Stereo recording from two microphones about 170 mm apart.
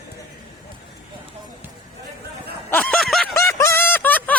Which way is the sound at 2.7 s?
10° left (ahead or behind).